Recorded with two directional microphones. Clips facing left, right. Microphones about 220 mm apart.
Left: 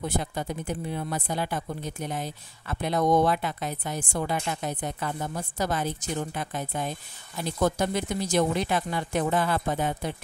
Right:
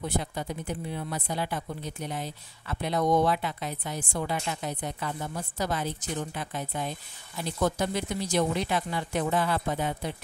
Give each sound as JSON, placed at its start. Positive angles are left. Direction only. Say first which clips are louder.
{"t": 0.1, "sound": "speech", "louder": "left 2 dB", "side_deg": 45}